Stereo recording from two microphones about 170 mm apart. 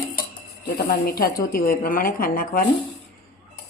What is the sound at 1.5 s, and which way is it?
Speech, 55° left (ahead or behind).